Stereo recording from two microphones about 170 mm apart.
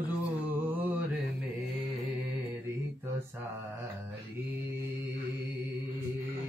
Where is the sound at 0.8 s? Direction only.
10° right (ahead or behind).